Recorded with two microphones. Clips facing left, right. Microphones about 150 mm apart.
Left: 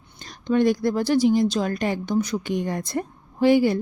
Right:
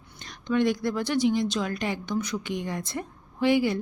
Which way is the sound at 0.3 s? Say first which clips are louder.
Left 4 dB; 35° left (ahead or behind).